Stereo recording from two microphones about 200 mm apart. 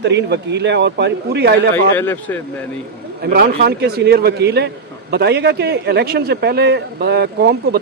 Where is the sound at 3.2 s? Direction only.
50° right (ahead or behind).